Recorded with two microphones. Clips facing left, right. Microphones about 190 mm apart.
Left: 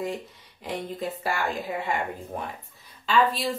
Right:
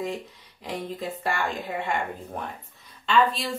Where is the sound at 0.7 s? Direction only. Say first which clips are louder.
Left 1 dB; centre (ahead or behind).